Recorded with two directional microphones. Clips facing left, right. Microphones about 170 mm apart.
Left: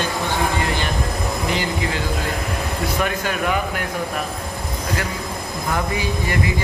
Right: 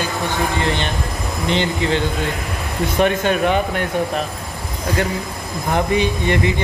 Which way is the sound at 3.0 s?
25° right (ahead or behind).